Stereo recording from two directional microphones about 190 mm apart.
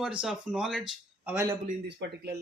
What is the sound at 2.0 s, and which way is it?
Speech, 65° right (ahead or behind).